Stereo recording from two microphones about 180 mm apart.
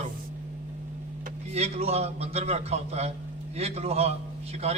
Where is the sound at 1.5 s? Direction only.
35° right (ahead or behind).